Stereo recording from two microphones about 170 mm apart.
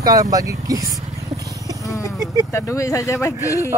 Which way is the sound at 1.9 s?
20° left (ahead or behind).